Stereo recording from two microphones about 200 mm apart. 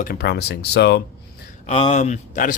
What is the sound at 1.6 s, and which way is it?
Speech, 30° left (ahead or behind).